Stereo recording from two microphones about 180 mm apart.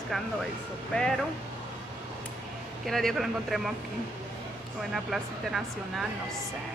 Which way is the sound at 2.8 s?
Centre (ahead or behind).